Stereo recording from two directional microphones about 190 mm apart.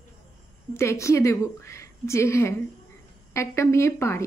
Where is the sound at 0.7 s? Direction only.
15° left (ahead or behind).